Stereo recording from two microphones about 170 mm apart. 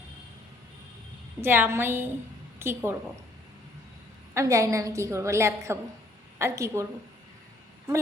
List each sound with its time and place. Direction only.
1.4 s a woman's voice: 10° right (ahead or behind)
4.4 s a woman's voice: 20° right (ahead or behind)